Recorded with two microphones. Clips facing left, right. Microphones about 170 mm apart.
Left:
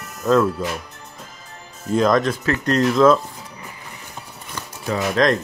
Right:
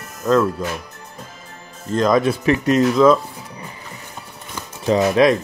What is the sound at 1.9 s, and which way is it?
Speech, centre (ahead or behind).